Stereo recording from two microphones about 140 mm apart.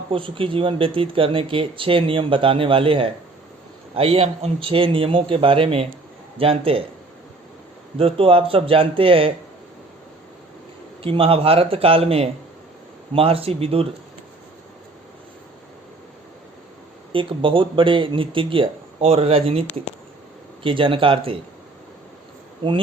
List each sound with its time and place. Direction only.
0.1 s speech: 40° right (ahead or behind)
7.9 s speech: 40° right (ahead or behind)
11.0 s speech: 40° right (ahead or behind)
17.1 s speech: 40° right (ahead or behind)